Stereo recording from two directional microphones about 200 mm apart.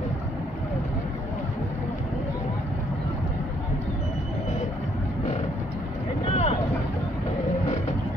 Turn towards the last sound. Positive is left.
turn(degrees=30)  # may be behind; listen again after turning